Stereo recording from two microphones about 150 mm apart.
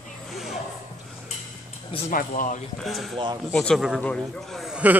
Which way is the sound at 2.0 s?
65° left (ahead or behind).